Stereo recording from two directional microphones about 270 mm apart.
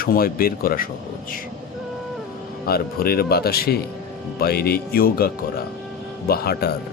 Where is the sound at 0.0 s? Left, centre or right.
Left.